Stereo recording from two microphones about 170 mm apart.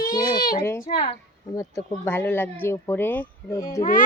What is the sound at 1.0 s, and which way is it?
Speech, 20° left (ahead or behind).